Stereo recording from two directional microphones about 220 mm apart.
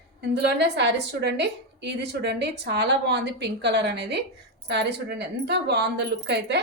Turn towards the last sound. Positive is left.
turn(degrees=-50)  # may be behind; listen again after turning